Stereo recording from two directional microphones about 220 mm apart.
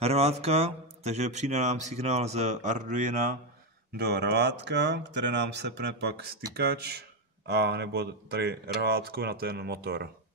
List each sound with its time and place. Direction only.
0.0 s speech: 30° right (ahead or behind)
3.9 s speech: 50° right (ahead or behind)